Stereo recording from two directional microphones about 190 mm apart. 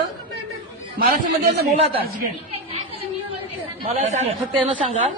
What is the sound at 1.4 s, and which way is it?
Speech, 55° right (ahead or behind).